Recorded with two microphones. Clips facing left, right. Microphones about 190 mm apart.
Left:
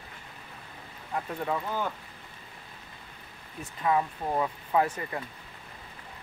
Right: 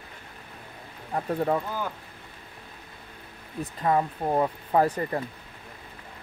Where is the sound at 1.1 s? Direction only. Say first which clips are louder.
Right 6 dB; 35° right (ahead or behind).